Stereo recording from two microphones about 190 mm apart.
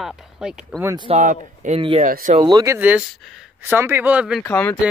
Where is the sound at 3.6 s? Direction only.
10° right (ahead or behind).